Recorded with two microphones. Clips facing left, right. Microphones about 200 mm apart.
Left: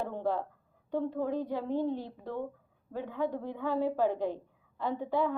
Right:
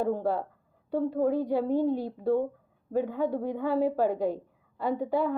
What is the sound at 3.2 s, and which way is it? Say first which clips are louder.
A woman's voice: right 5 dB; 10° right (ahead or behind).